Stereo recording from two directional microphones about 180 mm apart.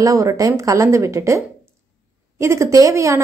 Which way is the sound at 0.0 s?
20° right (ahead or behind).